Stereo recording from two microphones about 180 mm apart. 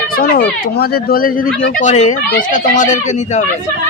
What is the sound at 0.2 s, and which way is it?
Speech, 55° left (ahead or behind).